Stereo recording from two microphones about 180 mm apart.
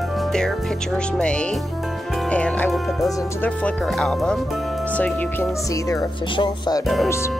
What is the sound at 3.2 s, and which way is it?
Speech, 10° left (ahead or behind).